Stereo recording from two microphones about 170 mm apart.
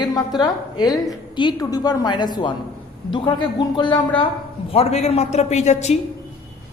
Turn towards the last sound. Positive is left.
turn(degrees=40)  # may be behind; listen again after turning